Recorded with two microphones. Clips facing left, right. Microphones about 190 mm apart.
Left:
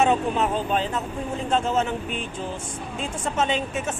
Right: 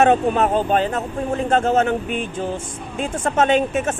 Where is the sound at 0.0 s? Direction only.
55° right (ahead or behind).